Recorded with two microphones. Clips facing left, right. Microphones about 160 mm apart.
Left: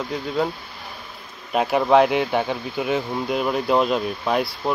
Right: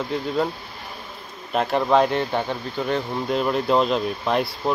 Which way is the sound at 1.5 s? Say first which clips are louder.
Left 2 dB; 5° left (ahead or behind).